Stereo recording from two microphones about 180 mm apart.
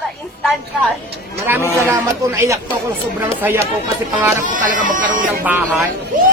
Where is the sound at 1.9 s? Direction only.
10° right (ahead or behind).